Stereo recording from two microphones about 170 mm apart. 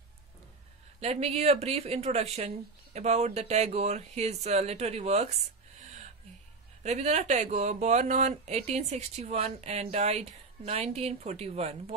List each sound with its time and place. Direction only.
1.0 s speech: 35° right (ahead or behind)
6.8 s speech: 40° right (ahead or behind)